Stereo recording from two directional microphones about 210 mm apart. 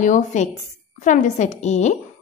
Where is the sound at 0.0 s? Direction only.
35° left (ahead or behind).